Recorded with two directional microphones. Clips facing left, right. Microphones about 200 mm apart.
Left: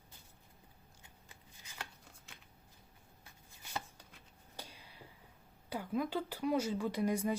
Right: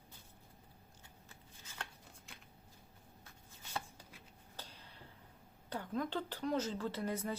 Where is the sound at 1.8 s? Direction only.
Centre (ahead or behind).